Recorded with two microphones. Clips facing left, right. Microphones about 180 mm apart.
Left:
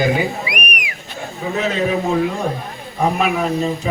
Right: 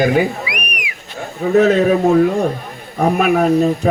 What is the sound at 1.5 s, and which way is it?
Speech, 50° right (ahead or behind).